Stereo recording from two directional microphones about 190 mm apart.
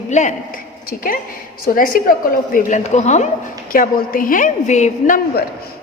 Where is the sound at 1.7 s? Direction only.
45° left (ahead or behind).